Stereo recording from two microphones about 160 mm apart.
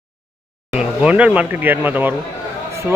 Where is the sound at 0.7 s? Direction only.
5° right (ahead or behind).